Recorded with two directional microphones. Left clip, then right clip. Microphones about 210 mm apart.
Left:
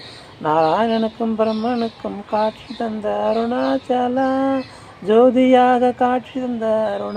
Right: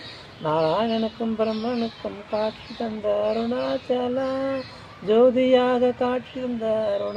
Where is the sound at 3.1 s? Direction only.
20° left (ahead or behind).